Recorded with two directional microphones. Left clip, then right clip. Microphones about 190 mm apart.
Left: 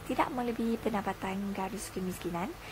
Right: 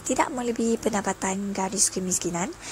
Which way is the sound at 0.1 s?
20° right (ahead or behind).